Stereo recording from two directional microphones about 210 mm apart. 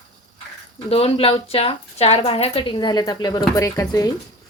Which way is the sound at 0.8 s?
30° left (ahead or behind).